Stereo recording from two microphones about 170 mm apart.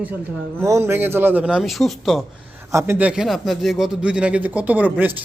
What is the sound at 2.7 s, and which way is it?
Speech, 15° right (ahead or behind).